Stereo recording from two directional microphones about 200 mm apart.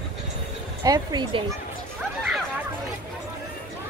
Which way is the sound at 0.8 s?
20° right (ahead or behind).